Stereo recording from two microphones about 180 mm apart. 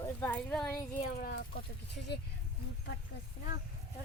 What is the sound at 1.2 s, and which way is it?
Speech, 55° left (ahead or behind).